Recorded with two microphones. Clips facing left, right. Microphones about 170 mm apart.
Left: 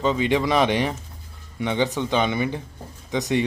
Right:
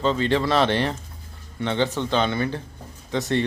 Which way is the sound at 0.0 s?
10° left (ahead or behind).